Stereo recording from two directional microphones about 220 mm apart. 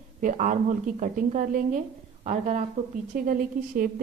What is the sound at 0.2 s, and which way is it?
A woman's voice, 35° right (ahead or behind).